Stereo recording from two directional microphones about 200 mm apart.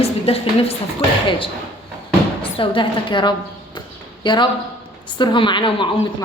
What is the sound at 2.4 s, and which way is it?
Speech, 25° left (ahead or behind).